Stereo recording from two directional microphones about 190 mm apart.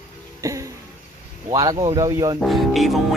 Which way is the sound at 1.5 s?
20° right (ahead or behind).